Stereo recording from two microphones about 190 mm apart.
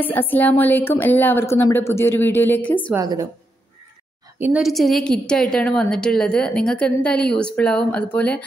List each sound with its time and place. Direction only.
0.0 s a woman's voice: 10° left (ahead or behind)
2.9 s a woman's voice: 20° right (ahead or behind)
4.4 s a woman's voice: 5° right (ahead or behind)